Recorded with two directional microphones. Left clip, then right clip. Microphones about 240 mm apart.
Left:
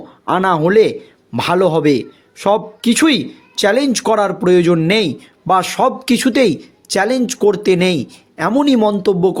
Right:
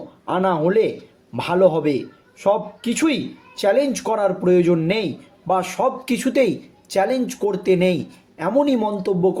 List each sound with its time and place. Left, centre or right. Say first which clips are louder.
0.3 s speech: left 5 dB; left